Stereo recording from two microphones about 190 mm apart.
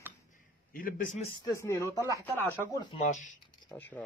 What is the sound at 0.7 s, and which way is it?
Speech, 45° left (ahead or behind).